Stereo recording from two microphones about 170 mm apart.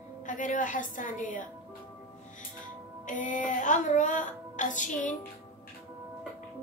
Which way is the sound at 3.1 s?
50° left (ahead or behind).